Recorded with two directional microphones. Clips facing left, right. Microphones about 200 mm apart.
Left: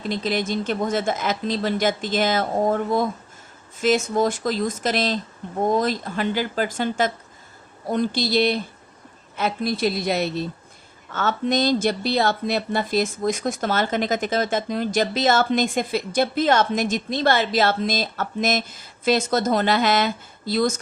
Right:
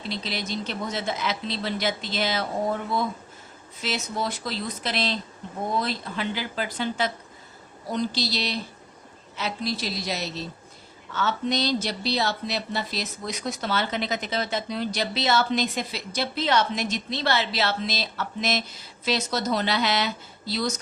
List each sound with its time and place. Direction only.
0.0 s speech: 50° left (ahead or behind)